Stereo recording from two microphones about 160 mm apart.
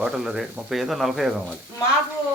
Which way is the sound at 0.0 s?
5° right (ahead or behind).